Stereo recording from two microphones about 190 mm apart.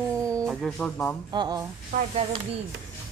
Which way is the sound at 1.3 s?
20° right (ahead or behind).